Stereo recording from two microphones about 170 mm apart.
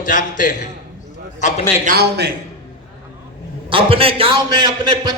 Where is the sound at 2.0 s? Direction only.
70° right (ahead or behind).